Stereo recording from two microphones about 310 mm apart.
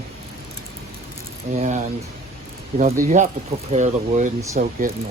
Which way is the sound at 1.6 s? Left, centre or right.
Right.